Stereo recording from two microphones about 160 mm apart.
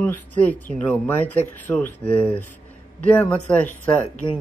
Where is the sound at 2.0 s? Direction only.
35° left (ahead or behind).